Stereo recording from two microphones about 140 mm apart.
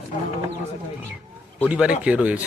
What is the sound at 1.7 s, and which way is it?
Speech, 10° right (ahead or behind).